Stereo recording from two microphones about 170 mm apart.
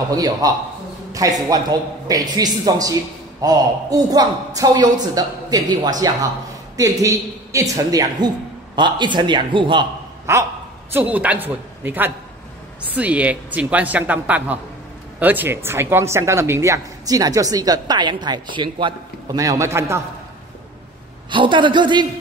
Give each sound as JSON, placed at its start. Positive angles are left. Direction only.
{"t": 0.1, "sound": "a woman's voice", "side_deg": -20}
{"t": 10.3, "sound": "speech", "side_deg": -15}
{"t": 21.3, "sound": "a woman's voice", "side_deg": -30}